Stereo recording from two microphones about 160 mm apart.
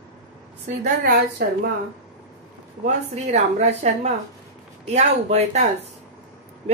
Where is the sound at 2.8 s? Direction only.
45° right (ahead or behind).